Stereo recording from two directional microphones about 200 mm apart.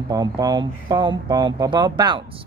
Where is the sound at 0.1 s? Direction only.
20° right (ahead or behind).